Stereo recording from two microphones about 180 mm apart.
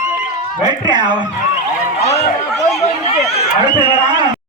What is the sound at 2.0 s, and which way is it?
Chatter, 35° left (ahead or behind).